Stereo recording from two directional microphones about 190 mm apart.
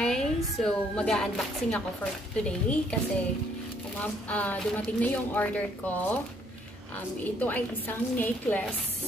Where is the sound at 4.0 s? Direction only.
10° left (ahead or behind).